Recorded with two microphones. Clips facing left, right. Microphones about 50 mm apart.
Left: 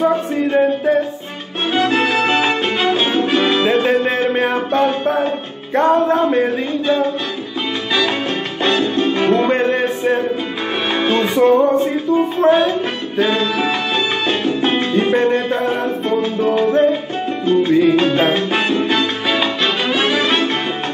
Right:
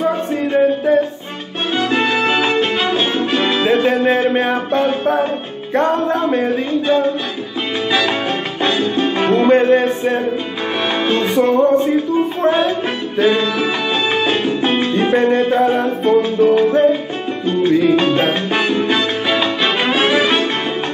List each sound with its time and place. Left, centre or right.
0.3 s music: centre
8.6 s music: centre
17.6 s salsa music: centre
19.8 s music: centre